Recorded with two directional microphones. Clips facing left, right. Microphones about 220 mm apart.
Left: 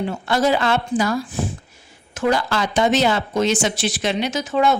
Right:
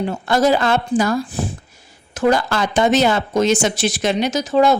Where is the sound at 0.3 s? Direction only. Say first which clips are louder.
Right 3 dB; 45° right (ahead or behind).